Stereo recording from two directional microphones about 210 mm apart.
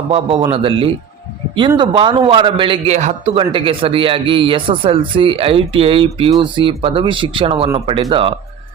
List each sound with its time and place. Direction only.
0.1 s a man's voice: 20° right (ahead or behind)